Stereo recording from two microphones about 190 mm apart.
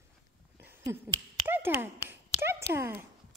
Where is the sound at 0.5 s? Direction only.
10° right (ahead or behind).